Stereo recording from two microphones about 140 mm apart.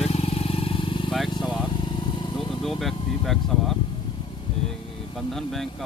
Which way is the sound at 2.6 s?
Centre (ahead or behind).